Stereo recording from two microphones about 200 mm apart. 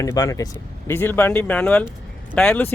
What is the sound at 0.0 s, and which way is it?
A man's voice, 15° left (ahead or behind).